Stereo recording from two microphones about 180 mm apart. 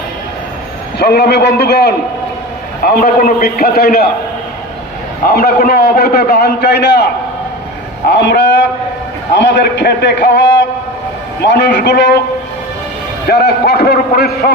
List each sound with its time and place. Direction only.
0.9 s a man's voice: 65° left (ahead or behind)
5.3 s a man's voice: 60° left (ahead or behind)
8.1 s a man's voice: 75° left (ahead or behind)
13.2 s a man's voice: 65° left (ahead or behind)